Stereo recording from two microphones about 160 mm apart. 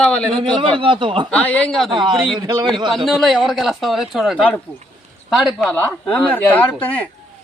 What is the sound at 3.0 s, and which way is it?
A man's voice, centre (ahead or behind).